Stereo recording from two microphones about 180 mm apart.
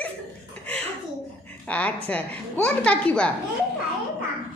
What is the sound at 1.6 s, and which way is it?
A woman's voice, 5° left (ahead or behind).